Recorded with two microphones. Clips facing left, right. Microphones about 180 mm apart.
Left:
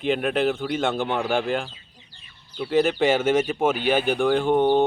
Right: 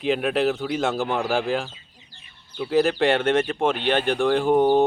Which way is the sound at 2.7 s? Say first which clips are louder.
Even; centre (ahead or behind).